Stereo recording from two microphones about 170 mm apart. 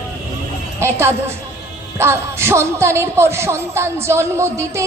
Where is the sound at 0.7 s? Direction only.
15° right (ahead or behind).